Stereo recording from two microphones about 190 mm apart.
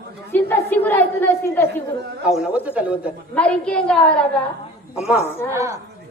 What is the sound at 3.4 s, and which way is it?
Speech, 5° left (ahead or behind).